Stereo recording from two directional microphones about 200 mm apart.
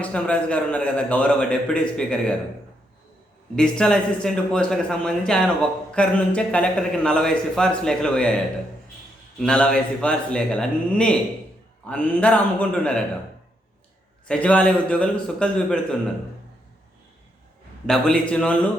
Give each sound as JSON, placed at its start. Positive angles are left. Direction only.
{"t": 0.0, "sound": "a man's voice", "side_deg": 5}
{"t": 3.5, "sound": "a man's voice", "side_deg": 5}
{"t": 9.4, "sound": "a man's voice", "side_deg": 5}
{"t": 14.3, "sound": "a man's voice", "side_deg": 5}
{"t": 17.8, "sound": "a man's voice", "side_deg": 5}